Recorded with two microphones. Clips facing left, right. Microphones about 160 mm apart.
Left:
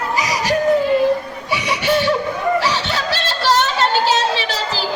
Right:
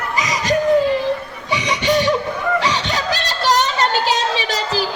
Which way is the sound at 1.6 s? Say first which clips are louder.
Even; 20° right (ahead or behind).